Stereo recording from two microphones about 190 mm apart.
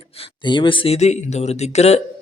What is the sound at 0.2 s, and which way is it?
A man's voice, 25° left (ahead or behind).